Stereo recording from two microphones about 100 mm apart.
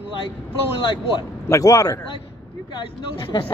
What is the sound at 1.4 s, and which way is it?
Speech, 35° left (ahead or behind).